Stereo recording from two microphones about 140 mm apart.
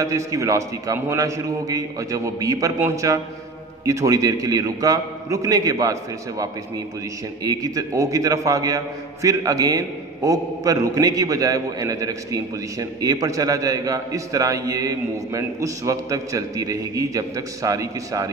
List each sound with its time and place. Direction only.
0.0 s a man's voice: 25° right (ahead or behind)